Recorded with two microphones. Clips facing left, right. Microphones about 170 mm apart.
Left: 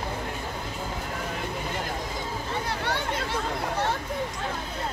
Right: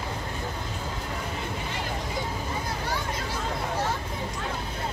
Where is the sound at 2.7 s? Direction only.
65° left (ahead or behind).